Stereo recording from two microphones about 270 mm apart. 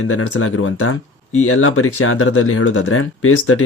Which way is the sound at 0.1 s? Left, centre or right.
Left.